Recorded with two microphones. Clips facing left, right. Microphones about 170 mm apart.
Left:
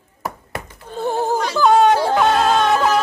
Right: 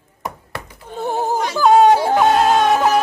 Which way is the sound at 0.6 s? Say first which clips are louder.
Left 1 dB; 15° right (ahead or behind).